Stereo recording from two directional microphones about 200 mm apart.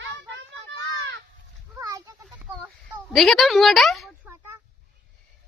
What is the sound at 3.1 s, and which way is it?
A woman's voice, centre (ahead or behind).